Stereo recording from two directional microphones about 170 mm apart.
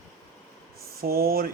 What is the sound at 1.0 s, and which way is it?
Speech, 60° right (ahead or behind).